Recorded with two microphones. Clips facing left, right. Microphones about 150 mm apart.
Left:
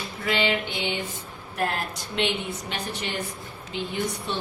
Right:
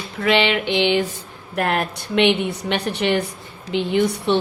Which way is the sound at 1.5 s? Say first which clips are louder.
Right 7 dB; 70° right (ahead or behind).